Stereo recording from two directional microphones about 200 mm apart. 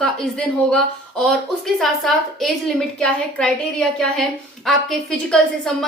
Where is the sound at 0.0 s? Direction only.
5° left (ahead or behind).